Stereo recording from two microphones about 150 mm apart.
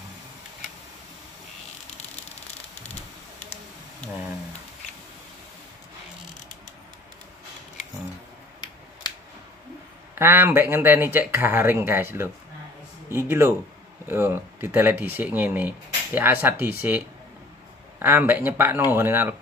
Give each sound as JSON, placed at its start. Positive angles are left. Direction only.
{"t": 10.1, "sound": "speech", "side_deg": -15}